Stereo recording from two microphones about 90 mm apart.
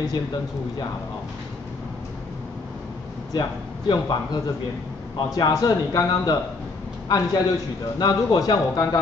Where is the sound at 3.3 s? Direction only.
50° left (ahead or behind).